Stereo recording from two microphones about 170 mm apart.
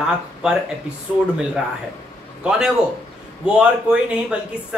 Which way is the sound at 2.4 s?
5° right (ahead or behind).